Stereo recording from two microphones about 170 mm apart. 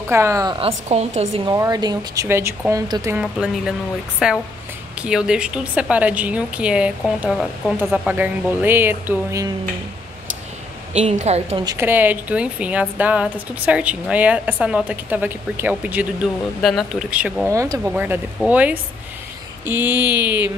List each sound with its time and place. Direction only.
0.1 s a woman's voice: 15° right (ahead or behind)
0.6 s a woman's voice: 35° right (ahead or behind)
1.4 s speech: 20° right (ahead or behind)
3.2 s a woman's voice: 5° right (ahead or behind)
10.9 s a woman's voice: 40° right (ahead or behind)
11.6 s a woman's voice: 15° right (ahead or behind)
17.5 s a woman's voice: 15° right (ahead or behind)